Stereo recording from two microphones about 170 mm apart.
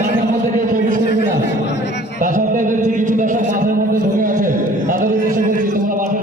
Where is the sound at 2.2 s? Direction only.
50° right (ahead or behind).